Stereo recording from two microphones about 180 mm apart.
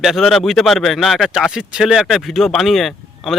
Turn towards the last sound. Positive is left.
turn(degrees=0)  # may be behind; listen again after turning